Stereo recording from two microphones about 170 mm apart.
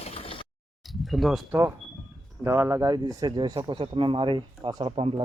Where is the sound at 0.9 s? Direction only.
Centre (ahead or behind).